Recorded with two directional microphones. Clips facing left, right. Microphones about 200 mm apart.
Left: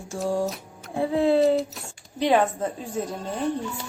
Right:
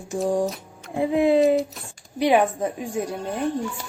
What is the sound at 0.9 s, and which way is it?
A woman's voice, 15° right (ahead or behind).